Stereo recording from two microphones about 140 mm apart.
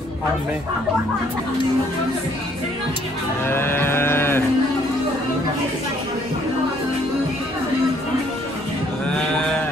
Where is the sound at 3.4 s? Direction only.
15° left (ahead or behind).